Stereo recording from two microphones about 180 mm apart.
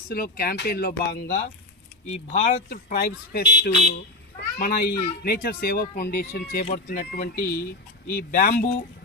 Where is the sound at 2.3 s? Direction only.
40° left (ahead or behind).